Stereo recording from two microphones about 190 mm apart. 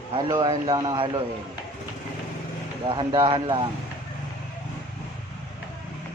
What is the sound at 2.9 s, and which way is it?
Speech, 25° right (ahead or behind).